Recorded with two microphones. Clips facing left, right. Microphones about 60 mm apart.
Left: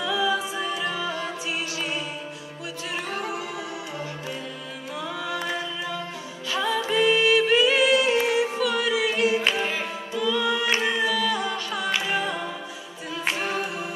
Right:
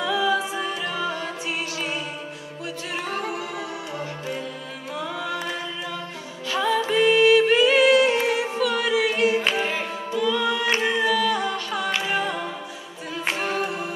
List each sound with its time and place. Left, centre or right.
0.0 s a capella: right
0.4 s music: right
6.5 s music: right